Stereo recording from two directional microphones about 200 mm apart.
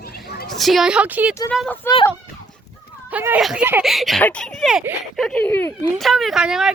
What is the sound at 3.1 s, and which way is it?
Speech, 10° right (ahead or behind).